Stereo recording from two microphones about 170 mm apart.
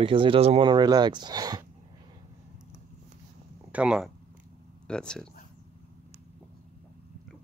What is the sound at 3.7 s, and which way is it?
Speech, 5° right (ahead or behind).